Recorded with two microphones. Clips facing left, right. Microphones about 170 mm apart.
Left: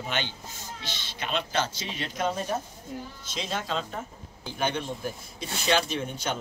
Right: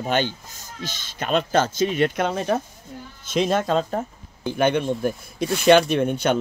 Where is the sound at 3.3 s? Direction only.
55° right (ahead or behind).